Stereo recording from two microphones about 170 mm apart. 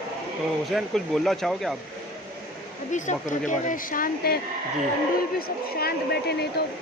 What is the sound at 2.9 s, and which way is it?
Speech, 45° left (ahead or behind).